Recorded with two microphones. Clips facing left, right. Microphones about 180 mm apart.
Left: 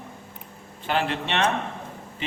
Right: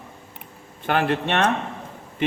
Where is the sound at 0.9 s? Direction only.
55° right (ahead or behind).